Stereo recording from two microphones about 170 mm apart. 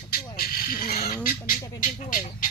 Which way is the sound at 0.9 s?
65° left (ahead or behind).